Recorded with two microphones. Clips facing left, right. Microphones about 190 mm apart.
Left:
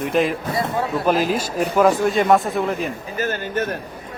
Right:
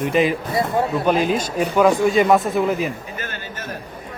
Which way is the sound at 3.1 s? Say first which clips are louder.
Left 8 dB; 40° left (ahead or behind).